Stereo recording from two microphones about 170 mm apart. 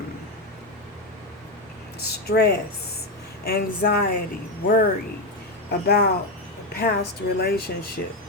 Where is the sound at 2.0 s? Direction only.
70° left (ahead or behind).